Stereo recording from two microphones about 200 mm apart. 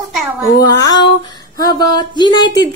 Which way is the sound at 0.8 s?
20° left (ahead or behind).